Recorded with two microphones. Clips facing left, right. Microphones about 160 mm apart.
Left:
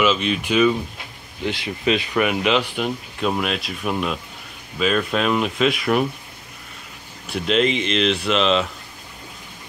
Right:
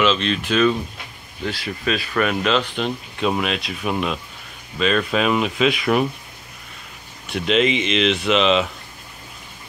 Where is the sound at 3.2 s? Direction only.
Centre (ahead or behind).